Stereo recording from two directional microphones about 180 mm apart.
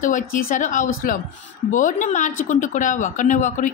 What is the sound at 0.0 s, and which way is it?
A woman's voice, 50° left (ahead or behind).